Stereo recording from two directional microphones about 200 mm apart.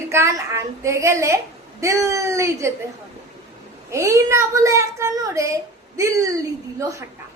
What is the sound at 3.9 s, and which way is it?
A woman's voice, 15° right (ahead or behind).